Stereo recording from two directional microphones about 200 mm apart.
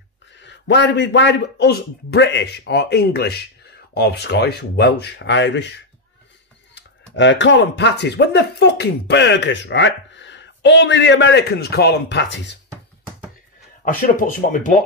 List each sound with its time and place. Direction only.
0.4 s speech: 60° left (ahead or behind)
6.7 s speech: 65° left (ahead or behind)
13.8 s speech: 40° left (ahead or behind)